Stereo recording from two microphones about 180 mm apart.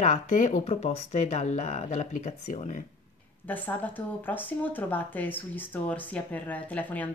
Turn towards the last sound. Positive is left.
turn(degrees=10)  # may be behind; listen again after turning